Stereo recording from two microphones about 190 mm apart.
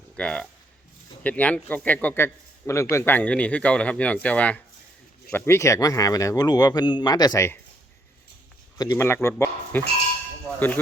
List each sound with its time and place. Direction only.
0.2 s speech: 5° left (ahead or behind)
8.8 s speech: 15° left (ahead or behind)